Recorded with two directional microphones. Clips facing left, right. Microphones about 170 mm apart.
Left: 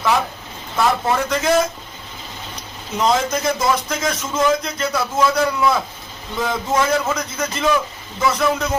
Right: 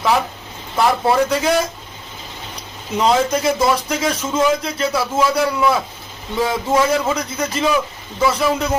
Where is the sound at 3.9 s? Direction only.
30° right (ahead or behind).